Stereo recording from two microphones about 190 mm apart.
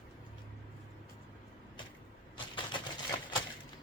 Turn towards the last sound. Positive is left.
turn(degrees=25)  # may be behind; listen again after turning